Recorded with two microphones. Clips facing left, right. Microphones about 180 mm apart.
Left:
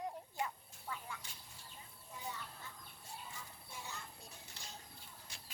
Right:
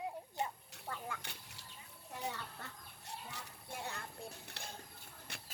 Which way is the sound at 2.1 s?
70° right (ahead or behind).